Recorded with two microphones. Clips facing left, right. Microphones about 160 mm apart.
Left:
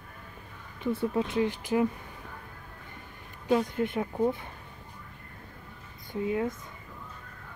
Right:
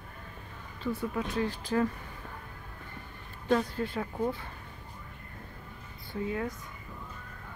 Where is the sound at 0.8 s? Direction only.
25° left (ahead or behind).